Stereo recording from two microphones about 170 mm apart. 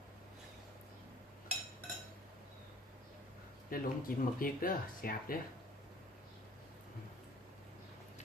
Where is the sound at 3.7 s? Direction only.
55° left (ahead or behind).